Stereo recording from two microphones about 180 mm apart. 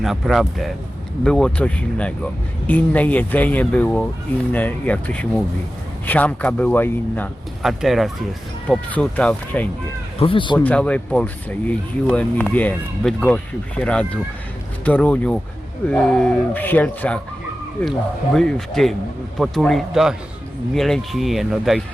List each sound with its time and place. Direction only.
0.0 s speech: centre (ahead or behind)
7.6 s speech: centre (ahead or behind)
10.2 s speech: 30° left (ahead or behind)
10.6 s speech: 10° left (ahead or behind)
18.3 s speech: 5° left (ahead or behind)